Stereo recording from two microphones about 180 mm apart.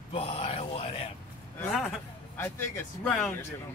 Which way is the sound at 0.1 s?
30° left (ahead or behind).